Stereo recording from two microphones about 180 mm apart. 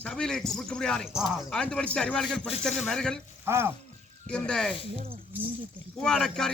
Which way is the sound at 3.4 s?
15° right (ahead or behind).